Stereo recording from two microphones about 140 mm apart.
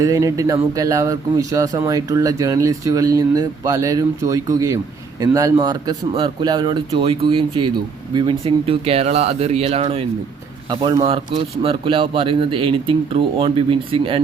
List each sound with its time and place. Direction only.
0.0 s speech: 25° right (ahead or behind); by 10.0 s 45° right (ahead or behind)
10.7 s speech: 30° right (ahead or behind)